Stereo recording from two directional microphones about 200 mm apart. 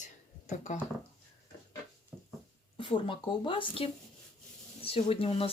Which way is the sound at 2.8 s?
25° left (ahead or behind).